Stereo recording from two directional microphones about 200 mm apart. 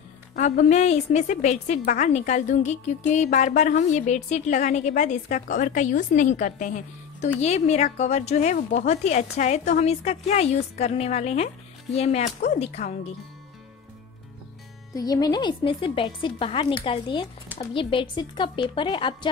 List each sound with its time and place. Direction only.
0.4 s speech: 35° left (ahead or behind)
15.0 s a woman's voice: 20° left (ahead or behind)